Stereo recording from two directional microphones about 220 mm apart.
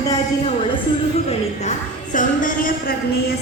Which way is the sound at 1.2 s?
35° left (ahead or behind).